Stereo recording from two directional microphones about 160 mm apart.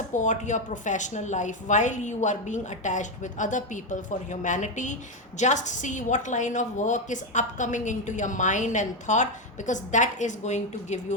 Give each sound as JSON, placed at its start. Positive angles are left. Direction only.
{"t": 0.1, "sound": "a woman's voice", "side_deg": 50}